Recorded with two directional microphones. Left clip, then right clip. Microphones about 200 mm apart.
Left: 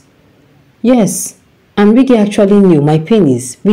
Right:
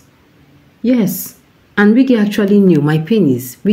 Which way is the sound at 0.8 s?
15° left (ahead or behind).